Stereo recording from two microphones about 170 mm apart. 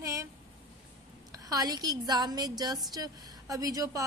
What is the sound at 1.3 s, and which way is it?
A woman's voice, 20° right (ahead or behind).